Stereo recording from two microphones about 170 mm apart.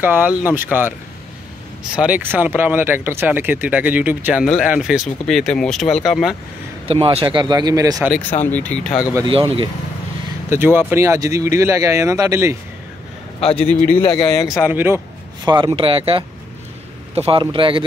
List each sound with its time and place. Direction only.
0.0 s speech: 10° right (ahead or behind)
2.0 s speech: 10° right (ahead or behind)
6.9 s speech: 35° right (ahead or behind)
8.5 s speech: 10° left (ahead or behind)
9.1 s speech: 30° right (ahead or behind)
10.5 s speech: 10° right (ahead or behind)
13.4 s a man's voice: 35° left (ahead or behind)
14.0 s speech: 20° left (ahead or behind)
14.7 s speech: 10° right (ahead or behind)
15.4 s speech: 25° right (ahead or behind)